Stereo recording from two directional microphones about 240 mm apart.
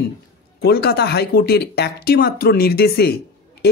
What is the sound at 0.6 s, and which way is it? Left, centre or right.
A woman's voice, left.